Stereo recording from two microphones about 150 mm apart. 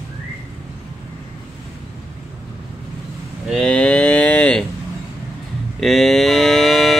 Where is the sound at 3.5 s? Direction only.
5° left (ahead or behind).